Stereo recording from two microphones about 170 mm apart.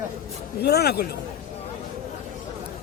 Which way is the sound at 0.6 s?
70° left (ahead or behind).